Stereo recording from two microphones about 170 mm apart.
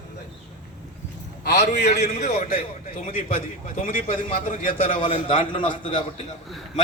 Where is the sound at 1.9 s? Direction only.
70° left (ahead or behind).